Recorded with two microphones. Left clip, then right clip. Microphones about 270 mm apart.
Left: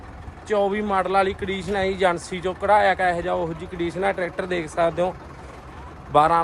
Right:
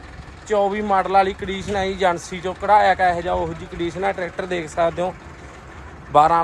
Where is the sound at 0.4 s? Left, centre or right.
Centre.